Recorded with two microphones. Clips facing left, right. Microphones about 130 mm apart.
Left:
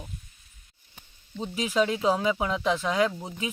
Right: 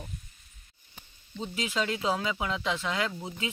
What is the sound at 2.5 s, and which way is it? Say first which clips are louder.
Speech: left 5 dB; 10° left (ahead or behind).